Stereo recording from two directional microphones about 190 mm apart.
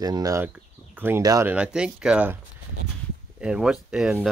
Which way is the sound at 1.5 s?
5° right (ahead or behind).